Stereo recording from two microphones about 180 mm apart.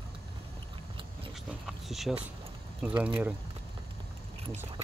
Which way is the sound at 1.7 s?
Centre (ahead or behind).